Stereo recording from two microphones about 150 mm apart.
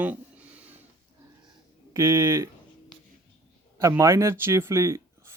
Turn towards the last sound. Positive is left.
turn(degrees=-20)  # may be behind; listen again after turning